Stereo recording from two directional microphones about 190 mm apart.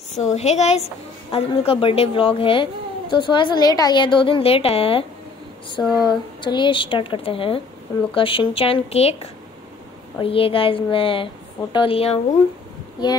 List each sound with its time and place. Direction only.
0.3 s a woman's voice: 35° left (ahead or behind)